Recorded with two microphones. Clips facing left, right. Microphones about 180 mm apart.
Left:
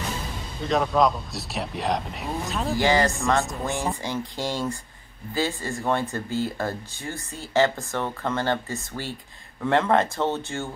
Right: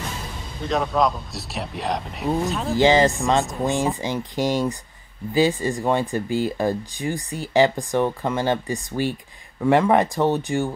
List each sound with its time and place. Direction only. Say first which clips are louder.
0.6 s speech: even; centre (ahead or behind)
2.7 s speech: right 5 dB; 20° right (ahead or behind)